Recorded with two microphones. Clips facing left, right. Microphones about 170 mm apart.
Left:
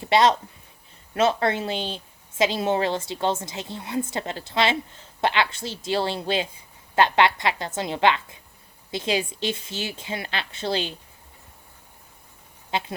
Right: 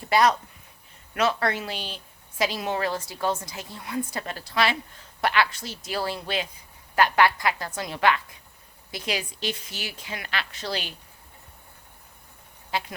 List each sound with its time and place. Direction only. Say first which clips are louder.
0.0 s speech: left 2 dB; 25° left (ahead or behind)
12.7 s speech: left 2 dB; 25° left (ahead or behind)